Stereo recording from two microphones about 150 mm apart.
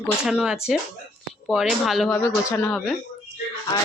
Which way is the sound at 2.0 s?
10° left (ahead or behind).